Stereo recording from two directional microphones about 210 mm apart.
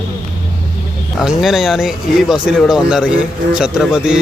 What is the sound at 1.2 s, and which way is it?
Speech, centre (ahead or behind).